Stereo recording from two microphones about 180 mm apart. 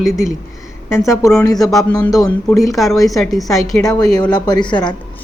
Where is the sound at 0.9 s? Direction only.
15° left (ahead or behind).